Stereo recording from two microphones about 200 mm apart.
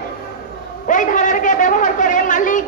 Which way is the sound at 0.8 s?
40° left (ahead or behind).